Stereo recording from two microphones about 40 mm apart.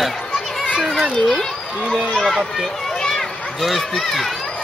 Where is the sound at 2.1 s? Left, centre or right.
Centre.